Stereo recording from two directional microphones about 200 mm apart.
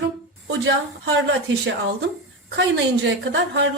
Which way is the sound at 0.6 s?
65° right (ahead or behind).